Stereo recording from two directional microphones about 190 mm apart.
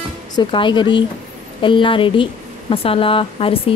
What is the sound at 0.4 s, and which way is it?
Speech, 25° left (ahead or behind).